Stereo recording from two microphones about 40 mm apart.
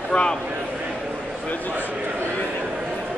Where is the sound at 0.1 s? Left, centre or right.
Left.